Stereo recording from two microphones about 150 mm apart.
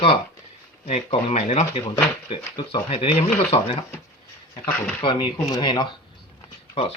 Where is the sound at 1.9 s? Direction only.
30° left (ahead or behind).